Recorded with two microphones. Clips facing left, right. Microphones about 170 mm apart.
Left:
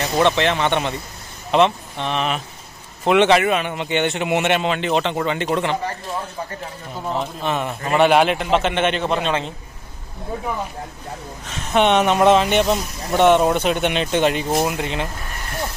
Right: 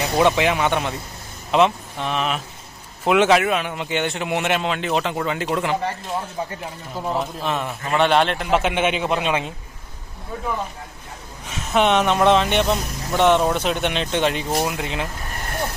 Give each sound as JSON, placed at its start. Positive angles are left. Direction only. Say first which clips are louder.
{"t": 0.0, "sound": "a man's voice", "louder": "even", "side_deg": -10}
{"t": 7.1, "sound": "a man's voice", "louder": "left 1 dB", "side_deg": 0}
{"t": 8.5, "sound": "a man's voice", "louder": "left 1 dB", "side_deg": -10}
{"t": 11.4, "sound": "a man's voice", "louder": "left 1 dB", "side_deg": -5}